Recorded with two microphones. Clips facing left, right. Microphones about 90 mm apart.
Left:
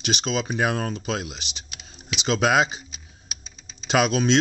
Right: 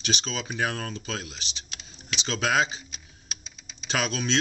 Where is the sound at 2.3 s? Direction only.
20° left (ahead or behind).